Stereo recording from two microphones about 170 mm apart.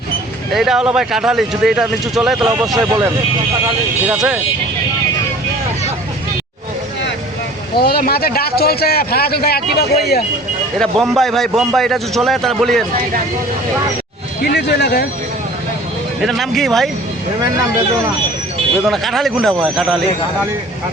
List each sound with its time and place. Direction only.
0.5 s a man's voice: centre (ahead or behind)
2.7 s speech: 20° right (ahead or behind)
4.0 s a man's voice: 5° right (ahead or behind)
7.8 s a man's voice: 65° left (ahead or behind)
10.8 s a man's voice: centre (ahead or behind)
14.4 s speech: 75° left (ahead or behind)
16.2 s a man's voice: centre (ahead or behind)
18.9 s a man's voice: centre (ahead or behind)